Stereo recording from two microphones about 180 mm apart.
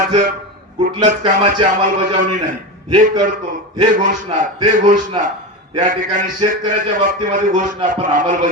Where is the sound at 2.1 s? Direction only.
50° right (ahead or behind).